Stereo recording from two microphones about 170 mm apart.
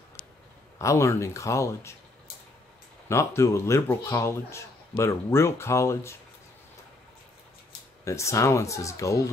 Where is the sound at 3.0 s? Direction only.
15° left (ahead or behind).